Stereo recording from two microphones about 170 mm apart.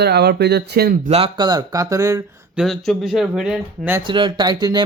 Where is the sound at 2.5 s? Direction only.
Centre (ahead or behind).